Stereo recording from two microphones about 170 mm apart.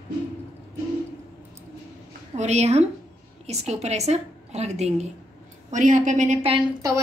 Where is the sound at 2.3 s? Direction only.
40° right (ahead or behind).